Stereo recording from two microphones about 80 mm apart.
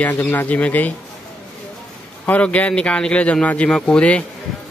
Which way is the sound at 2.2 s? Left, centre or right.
Centre.